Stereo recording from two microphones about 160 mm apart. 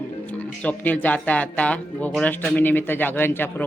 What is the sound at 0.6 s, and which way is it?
Speech, 10° left (ahead or behind).